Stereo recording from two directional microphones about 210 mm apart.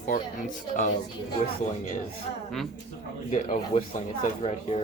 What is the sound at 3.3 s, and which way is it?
Speech, 35° left (ahead or behind).